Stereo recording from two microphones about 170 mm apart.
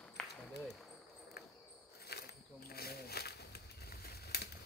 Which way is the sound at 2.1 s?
70° left (ahead or behind).